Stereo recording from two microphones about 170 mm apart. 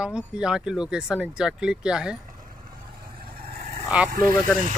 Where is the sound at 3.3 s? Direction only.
75° right (ahead or behind).